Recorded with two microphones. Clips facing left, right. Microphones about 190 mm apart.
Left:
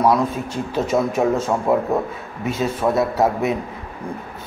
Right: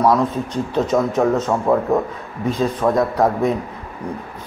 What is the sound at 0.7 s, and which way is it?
A man's voice, 10° left (ahead or behind).